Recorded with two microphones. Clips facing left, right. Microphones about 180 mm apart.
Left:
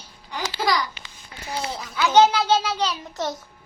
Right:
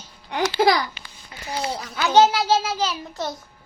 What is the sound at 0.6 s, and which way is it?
Speech, 60° right (ahead or behind).